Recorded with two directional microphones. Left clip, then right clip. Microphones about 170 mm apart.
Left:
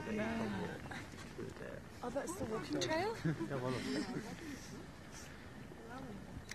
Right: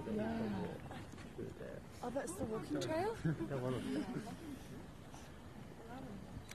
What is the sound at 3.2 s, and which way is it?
Speech, 35° right (ahead or behind).